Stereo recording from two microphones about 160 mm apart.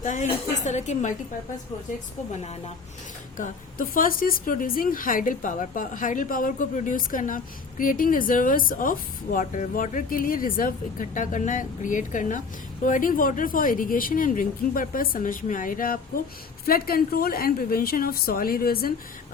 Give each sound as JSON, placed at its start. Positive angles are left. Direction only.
{"t": 0.0, "sound": "a woman's voice", "side_deg": 50}
{"t": 2.4, "sound": "speech", "side_deg": 40}
{"t": 3.3, "sound": "a woman's voice", "side_deg": 55}